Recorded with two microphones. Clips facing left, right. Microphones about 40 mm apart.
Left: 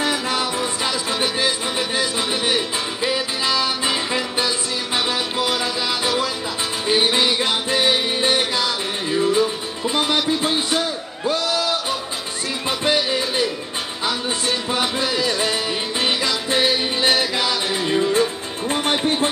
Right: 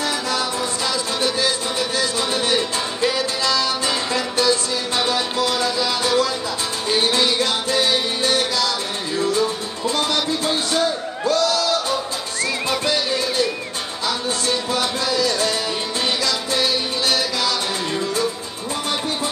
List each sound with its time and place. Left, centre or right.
0.0 s music: left
11.2 s a sound: centre
12.6 s music: left
14.7 s music: left
18.7 s music: left